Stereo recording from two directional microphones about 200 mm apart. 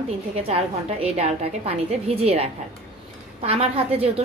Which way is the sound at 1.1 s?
30° right (ahead or behind).